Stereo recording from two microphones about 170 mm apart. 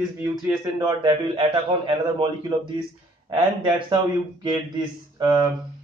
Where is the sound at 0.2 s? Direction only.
20° right (ahead or behind).